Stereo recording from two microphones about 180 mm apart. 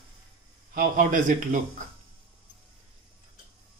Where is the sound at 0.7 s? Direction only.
45° right (ahead or behind).